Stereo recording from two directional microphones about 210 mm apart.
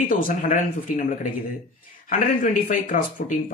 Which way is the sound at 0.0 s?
40° left (ahead or behind).